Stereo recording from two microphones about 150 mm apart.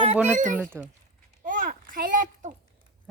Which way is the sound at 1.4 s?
60° right (ahead or behind).